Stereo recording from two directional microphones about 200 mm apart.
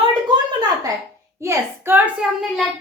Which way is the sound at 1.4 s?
10° right (ahead or behind).